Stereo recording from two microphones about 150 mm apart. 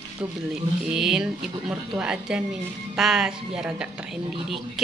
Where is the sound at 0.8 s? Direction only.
5° right (ahead or behind).